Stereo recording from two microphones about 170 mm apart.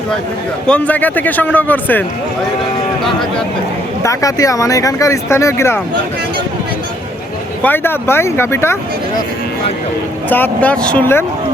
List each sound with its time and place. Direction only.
0.7 s a man's voice: 10° left (ahead or behind)
4.0 s speech: 20° left (ahead or behind)
7.6 s a man's voice: 10° left (ahead or behind)
10.2 s a man's voice: 10° left (ahead or behind)